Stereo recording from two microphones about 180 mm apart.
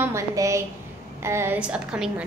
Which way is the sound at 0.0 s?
15° right (ahead or behind).